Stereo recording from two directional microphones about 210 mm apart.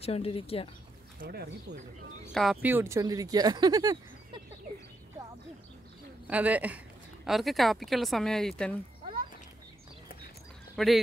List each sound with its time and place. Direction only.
0.0 s speech: 30° left (ahead or behind)
1.2 s speech: 50° right (ahead or behind)
2.3 s speech: centre (ahead or behind); by 4.4 s 20° right (ahead or behind)
6.2 s speech: 5° right (ahead or behind)
10.8 s speech: centre (ahead or behind)